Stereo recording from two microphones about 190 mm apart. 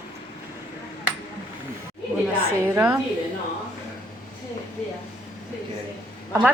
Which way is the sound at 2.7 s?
10° right (ahead or behind).